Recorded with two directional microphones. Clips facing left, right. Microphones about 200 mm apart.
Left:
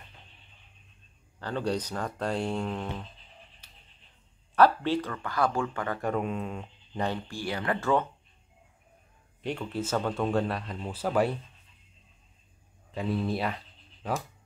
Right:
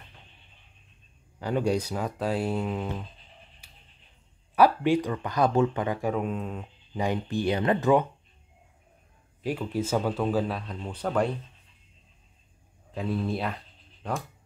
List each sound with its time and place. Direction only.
1.4 s speech: 10° right (ahead or behind)
3.6 s a sound: 10° right (ahead or behind)
4.6 s speech: 10° right (ahead or behind)
5.9 s speech: 5° right (ahead or behind)
9.4 s speech: 5° right (ahead or behind)
12.9 s speech: centre (ahead or behind)